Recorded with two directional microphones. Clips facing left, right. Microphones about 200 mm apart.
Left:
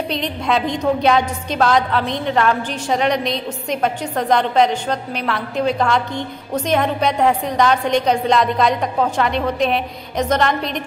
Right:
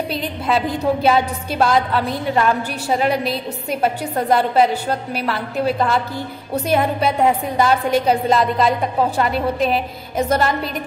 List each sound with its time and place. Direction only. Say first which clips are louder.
0.1 s a woman's voice: left 2 dB; 5° right (ahead or behind)